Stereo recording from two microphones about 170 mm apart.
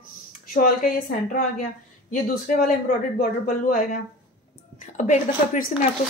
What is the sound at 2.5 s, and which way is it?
A woman's voice, 50° left (ahead or behind).